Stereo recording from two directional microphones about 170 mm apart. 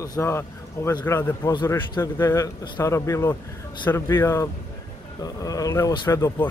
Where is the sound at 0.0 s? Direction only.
20° left (ahead or behind).